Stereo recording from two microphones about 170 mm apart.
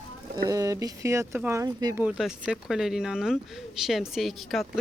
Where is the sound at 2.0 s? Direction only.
5° right (ahead or behind).